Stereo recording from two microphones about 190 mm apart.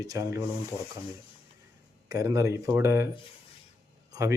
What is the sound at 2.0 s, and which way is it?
Speech, 15° right (ahead or behind).